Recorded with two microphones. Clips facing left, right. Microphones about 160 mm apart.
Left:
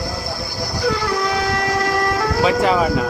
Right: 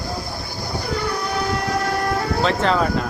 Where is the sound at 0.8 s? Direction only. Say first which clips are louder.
Left 6 dB; 90° left.